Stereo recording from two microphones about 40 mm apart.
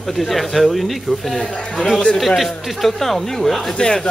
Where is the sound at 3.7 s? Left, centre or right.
Left.